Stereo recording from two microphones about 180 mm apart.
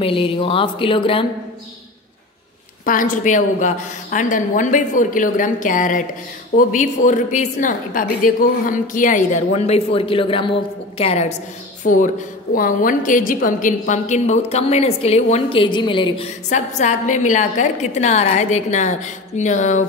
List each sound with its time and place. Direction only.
0.0 s a woman's voice: 30° left (ahead or behind)
2.8 s a woman's voice: 50° left (ahead or behind); by 16.3 s 25° left (ahead or behind)
16.4 s a woman's voice: 40° left (ahead or behind)